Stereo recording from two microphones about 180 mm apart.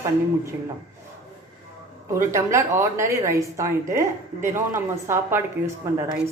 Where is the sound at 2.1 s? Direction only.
15° right (ahead or behind).